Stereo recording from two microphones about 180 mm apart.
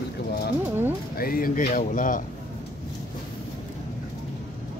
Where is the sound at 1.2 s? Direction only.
55° left (ahead or behind).